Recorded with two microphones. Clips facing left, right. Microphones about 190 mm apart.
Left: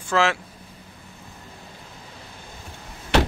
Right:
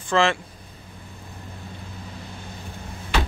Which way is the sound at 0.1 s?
5° left (ahead or behind).